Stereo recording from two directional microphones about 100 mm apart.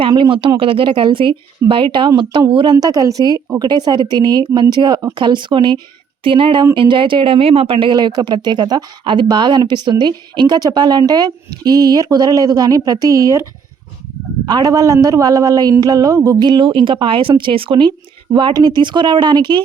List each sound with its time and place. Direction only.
0.1 s a woman's voice: 55° right (ahead or behind)
2.7 s a man's voice: 35° right (ahead or behind)
14.4 s a man's voice: 45° right (ahead or behind)